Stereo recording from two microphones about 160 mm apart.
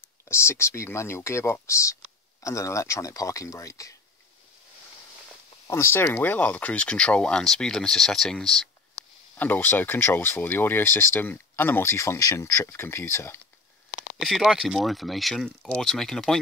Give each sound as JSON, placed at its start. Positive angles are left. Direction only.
{"t": 0.3, "sound": "speech", "side_deg": 15}
{"t": 5.7, "sound": "speech", "side_deg": 15}
{"t": 14.2, "sound": "speech", "side_deg": 0}